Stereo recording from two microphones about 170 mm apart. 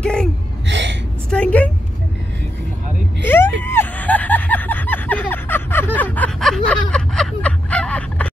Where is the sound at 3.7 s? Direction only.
10° left (ahead or behind).